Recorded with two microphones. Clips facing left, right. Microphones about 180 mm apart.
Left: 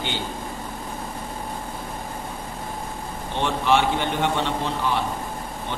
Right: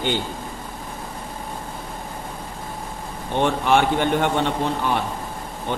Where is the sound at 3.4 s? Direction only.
50° right (ahead or behind).